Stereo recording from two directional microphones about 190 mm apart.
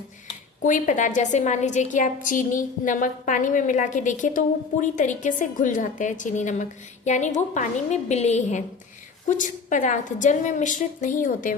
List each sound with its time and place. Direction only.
0.6 s a woman's voice: 40° left (ahead or behind)